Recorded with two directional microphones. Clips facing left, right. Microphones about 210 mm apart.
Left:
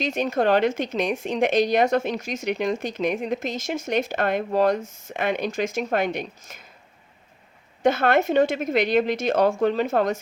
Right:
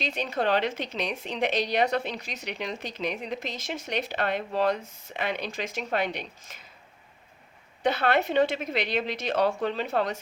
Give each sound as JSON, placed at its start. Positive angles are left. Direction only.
{"t": 0.0, "sound": "speech", "side_deg": 45}
{"t": 7.8, "sound": "speech", "side_deg": 45}